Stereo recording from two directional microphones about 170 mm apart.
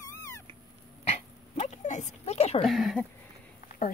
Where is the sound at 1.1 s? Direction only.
40° left (ahead or behind).